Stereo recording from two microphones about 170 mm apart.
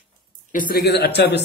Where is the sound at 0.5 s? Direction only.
55° left (ahead or behind); by 1.4 s 75° left (ahead or behind).